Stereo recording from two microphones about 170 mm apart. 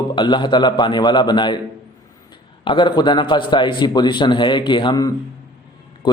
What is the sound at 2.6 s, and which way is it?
Speech, 25° left (ahead or behind).